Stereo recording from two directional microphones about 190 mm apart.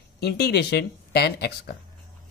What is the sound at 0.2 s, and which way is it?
Speech, 60° left (ahead or behind).